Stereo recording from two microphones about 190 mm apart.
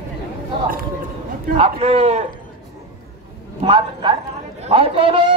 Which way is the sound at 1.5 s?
35° right (ahead or behind).